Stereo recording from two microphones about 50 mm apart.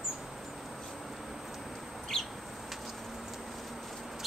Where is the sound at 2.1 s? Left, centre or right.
Centre.